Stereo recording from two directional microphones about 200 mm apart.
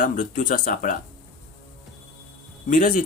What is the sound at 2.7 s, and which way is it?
Speech, 40° left (ahead or behind).